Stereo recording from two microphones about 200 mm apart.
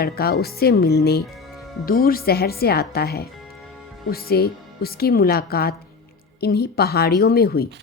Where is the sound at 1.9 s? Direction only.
45° left (ahead or behind).